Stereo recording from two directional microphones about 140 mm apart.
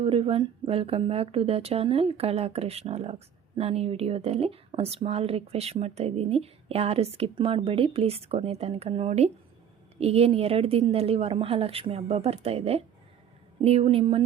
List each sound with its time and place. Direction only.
0.0 s speech: 45° right (ahead or behind)